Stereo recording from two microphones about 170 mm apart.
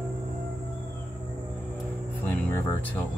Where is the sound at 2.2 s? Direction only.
15° left (ahead or behind).